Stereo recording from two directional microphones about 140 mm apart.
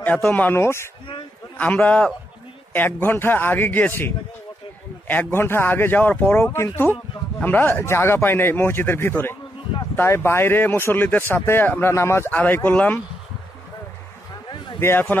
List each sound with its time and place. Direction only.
0.0 s speech: 10° left (ahead or behind)
14.8 s speech: 15° left (ahead or behind)